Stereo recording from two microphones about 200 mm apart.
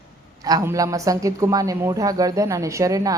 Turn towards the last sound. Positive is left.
turn(degrees=-15)  # may be behind; listen again after turning